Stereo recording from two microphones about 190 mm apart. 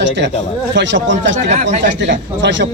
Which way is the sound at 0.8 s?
70° right (ahead or behind).